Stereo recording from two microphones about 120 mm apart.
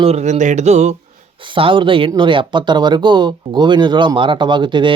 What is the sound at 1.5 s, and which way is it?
Speech, 45° right (ahead or behind).